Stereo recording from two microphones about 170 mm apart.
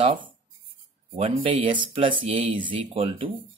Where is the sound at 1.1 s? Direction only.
30° right (ahead or behind).